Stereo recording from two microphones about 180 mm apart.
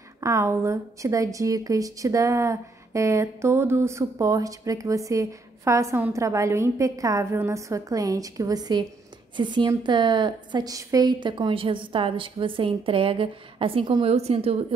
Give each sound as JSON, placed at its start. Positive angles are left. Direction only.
{"t": 0.2, "sound": "a woman's voice", "side_deg": -15}